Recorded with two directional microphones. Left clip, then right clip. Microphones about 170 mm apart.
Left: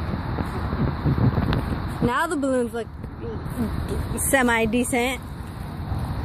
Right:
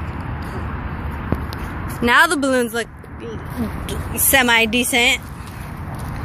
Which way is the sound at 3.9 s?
20° left (ahead or behind).